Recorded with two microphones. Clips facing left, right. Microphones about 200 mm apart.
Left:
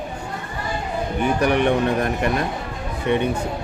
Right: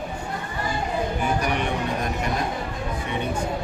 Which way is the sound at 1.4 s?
60° left (ahead or behind).